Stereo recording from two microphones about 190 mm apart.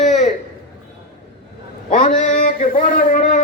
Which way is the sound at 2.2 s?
40° left (ahead or behind).